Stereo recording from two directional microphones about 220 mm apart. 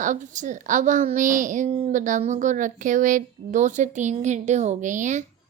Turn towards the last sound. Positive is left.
turn(degrees=-35)  # may be behind; listen again after turning